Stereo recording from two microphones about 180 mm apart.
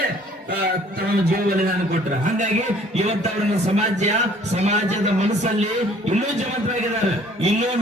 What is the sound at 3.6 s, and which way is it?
Speech, 40° right (ahead or behind).